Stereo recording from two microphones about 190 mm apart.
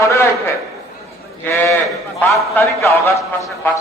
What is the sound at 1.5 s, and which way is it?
A man's voice, 10° left (ahead or behind).